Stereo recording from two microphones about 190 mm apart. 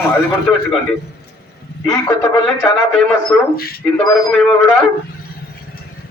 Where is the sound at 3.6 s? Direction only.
50° left (ahead or behind).